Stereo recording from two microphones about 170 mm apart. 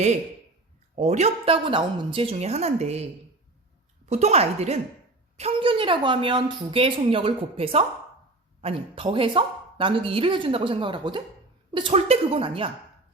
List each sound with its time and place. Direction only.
0.9 s speech: 40° right (ahead or behind)